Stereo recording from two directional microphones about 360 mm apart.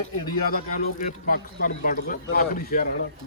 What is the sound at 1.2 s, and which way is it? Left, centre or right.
Speech, left.